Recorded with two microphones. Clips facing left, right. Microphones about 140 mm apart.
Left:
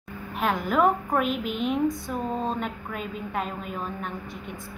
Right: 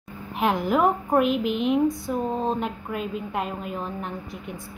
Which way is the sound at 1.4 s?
50° left (ahead or behind).